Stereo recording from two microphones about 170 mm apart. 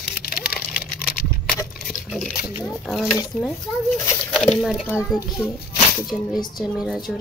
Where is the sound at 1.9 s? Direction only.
5° right (ahead or behind).